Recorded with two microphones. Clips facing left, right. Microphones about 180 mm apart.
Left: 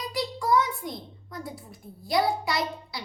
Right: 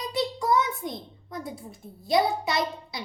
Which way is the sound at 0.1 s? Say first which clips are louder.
Even; 25° right (ahead or behind).